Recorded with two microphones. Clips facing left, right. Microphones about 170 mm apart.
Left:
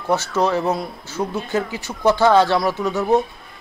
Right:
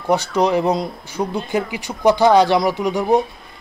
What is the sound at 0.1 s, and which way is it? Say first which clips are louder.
Speech: right 2 dB; 15° right (ahead or behind).